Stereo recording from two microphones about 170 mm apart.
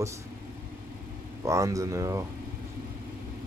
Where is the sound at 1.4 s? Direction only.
20° right (ahead or behind).